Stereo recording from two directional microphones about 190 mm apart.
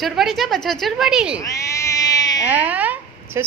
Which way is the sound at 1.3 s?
15° left (ahead or behind).